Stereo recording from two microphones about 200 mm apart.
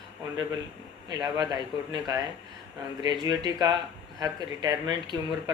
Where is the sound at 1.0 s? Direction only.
20° right (ahead or behind).